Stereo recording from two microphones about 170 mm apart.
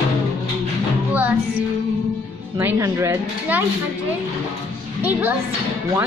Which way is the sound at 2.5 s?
15° right (ahead or behind).